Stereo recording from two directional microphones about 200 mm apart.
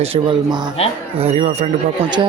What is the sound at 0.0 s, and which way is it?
Speech, 25° right (ahead or behind).